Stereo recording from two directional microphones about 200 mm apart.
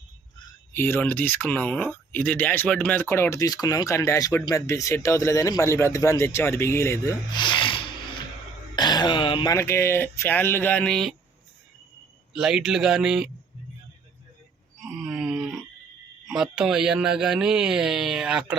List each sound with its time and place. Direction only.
0.7 s speech: 10° left (ahead or behind)
12.3 s a man's voice: 5° right (ahead or behind)
14.8 s a sound: centre (ahead or behind)
16.2 s a man's voice: centre (ahead or behind)